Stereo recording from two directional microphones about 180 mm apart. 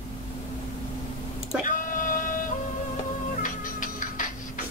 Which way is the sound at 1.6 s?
45° left (ahead or behind).